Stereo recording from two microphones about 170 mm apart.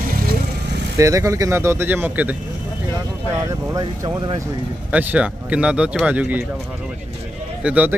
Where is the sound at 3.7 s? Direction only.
25° right (ahead or behind).